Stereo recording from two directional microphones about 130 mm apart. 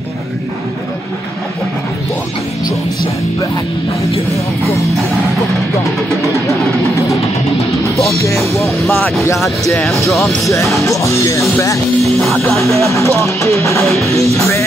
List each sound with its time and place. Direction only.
6.2 s music: 25° left (ahead or behind)
8.2 s music: 25° left (ahead or behind)
8.6 s speech: centre (ahead or behind)
10.1 s speech: centre (ahead or behind)
10.8 s music: 25° left (ahead or behind)
12.0 s music: centre (ahead or behind)
12.9 s music: 20° left (ahead or behind)